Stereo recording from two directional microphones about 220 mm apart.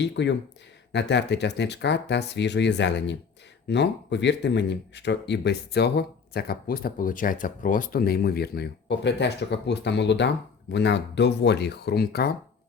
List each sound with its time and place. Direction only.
0.0 s speech: 50° left (ahead or behind)